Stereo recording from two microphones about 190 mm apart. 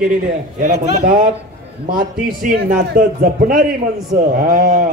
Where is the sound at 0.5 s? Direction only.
40° right (ahead or behind).